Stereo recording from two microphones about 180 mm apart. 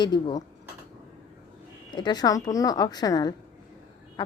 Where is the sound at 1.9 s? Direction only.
25° left (ahead or behind).